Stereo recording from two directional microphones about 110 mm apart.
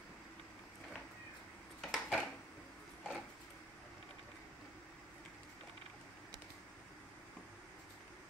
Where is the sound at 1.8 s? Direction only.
Centre (ahead or behind).